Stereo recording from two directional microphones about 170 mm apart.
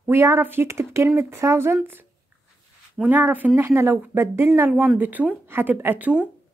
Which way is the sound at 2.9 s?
10° right (ahead or behind).